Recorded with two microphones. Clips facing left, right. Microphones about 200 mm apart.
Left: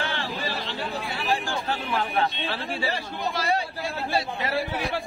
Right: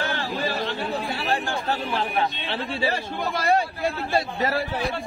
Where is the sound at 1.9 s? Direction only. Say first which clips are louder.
Right 1 dB; 30° right (ahead or behind).